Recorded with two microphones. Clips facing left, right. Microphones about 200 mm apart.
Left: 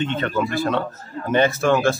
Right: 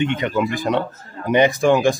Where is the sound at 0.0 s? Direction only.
15° right (ahead or behind).